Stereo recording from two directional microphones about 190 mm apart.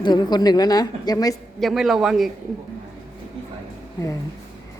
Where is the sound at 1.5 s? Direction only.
Centre (ahead or behind).